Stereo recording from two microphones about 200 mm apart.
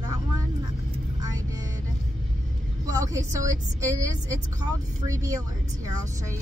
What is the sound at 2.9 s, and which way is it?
A woman's voice, 15° right (ahead or behind).